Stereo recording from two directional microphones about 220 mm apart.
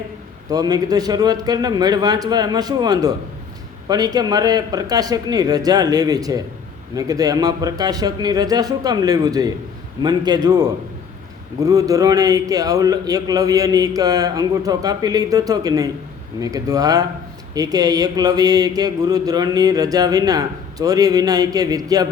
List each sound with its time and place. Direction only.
0.5 s a man's voice: 15° right (ahead or behind)